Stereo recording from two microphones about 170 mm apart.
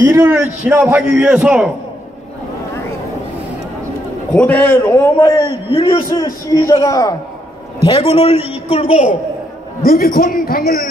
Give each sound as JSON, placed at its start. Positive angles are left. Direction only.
{"t": 0.1, "sound": "a man's voice", "side_deg": -15}
{"t": 4.3, "sound": "a man's voice", "side_deg": 10}
{"t": 6.1, "sound": "a man's voice", "side_deg": 20}
{"t": 9.8, "sound": "a man's voice", "side_deg": 60}